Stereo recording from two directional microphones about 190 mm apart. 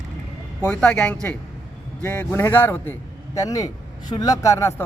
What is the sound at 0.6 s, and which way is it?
A man's voice, 5° left (ahead or behind).